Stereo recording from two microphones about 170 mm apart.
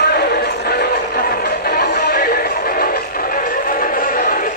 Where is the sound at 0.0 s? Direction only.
70° left (ahead or behind).